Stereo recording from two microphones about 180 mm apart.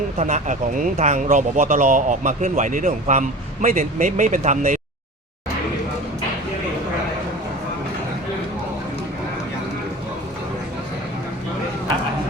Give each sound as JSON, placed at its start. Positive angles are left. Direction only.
{"t": 0.2, "sound": "speech", "side_deg": -40}